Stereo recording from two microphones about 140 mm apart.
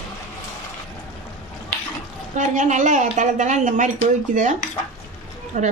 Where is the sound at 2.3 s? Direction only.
60° right (ahead or behind).